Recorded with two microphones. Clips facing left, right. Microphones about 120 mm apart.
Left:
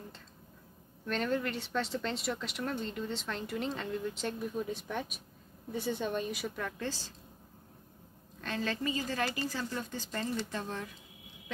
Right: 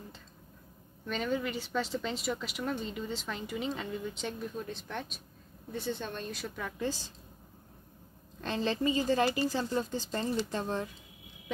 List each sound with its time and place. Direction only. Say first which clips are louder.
1.0 s speech: even; centre (ahead or behind)
6.8 s a woman's voice: right 4 dB; 15° right (ahead or behind)
8.4 s a woman's voice: right 4 dB; 25° right (ahead or behind)